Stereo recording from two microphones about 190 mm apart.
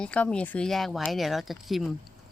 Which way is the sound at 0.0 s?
5° left (ahead or behind).